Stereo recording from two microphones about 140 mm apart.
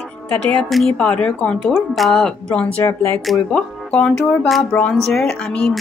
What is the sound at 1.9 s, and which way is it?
Speech, centre (ahead or behind).